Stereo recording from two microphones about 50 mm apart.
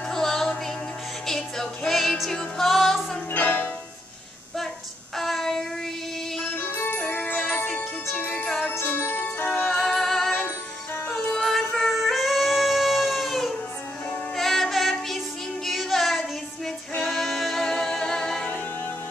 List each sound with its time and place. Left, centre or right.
0.1 s music: centre
3.3 s music: left
5.1 s child singing: centre
6.5 s music: left
7.1 s music: left
8.8 s music: left
9.7 s music: centre
11.3 s music: centre
15.6 s child singing: centre
17.0 s music: centre